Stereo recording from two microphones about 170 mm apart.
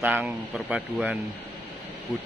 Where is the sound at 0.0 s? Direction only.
5° right (ahead or behind).